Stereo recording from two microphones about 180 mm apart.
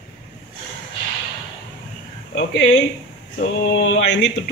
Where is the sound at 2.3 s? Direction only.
75° left (ahead or behind).